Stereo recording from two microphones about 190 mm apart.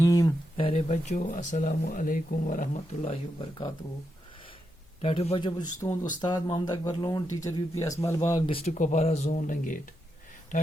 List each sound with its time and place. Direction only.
0.0 s speech: 20° left (ahead or behind)
0.5 s speech: 30° left (ahead or behind)
5.0 s speech: 30° left (ahead or behind)
8.4 s speech: 30° left (ahead or behind)